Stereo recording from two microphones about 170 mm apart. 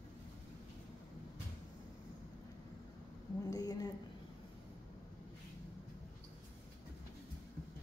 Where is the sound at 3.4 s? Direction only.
20° left (ahead or behind).